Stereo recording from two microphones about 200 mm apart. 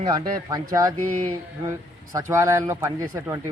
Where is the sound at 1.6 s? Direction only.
15° right (ahead or behind).